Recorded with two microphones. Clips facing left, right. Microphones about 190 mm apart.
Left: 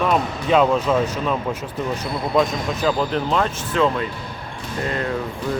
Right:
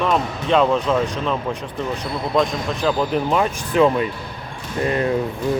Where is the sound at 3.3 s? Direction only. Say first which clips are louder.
Right 2 dB; 10° right (ahead or behind).